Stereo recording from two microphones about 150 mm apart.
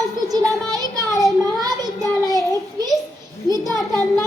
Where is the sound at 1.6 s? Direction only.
25° right (ahead or behind).